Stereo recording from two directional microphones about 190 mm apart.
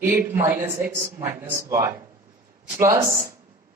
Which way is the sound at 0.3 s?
10° right (ahead or behind).